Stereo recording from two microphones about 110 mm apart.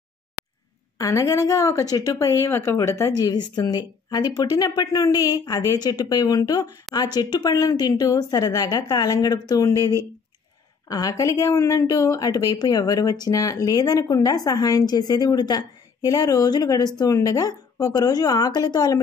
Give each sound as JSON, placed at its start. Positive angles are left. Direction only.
{"t": 0.9, "sound": "a woman's voice", "side_deg": 30}